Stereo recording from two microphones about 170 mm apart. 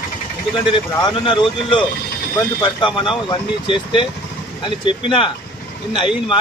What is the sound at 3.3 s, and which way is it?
Speech, 30° left (ahead or behind).